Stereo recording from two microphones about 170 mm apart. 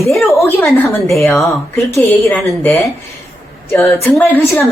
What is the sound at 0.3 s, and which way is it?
A woman's voice, 15° left (ahead or behind).